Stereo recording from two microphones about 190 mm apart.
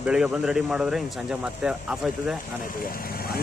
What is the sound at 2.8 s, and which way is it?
Speech, 55° left (ahead or behind).